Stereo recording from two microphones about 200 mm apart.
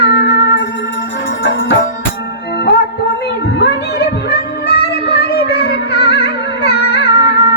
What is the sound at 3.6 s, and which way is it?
Music, 55° left (ahead or behind).